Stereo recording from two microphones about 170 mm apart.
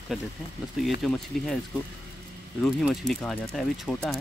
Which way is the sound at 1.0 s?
Centre (ahead or behind).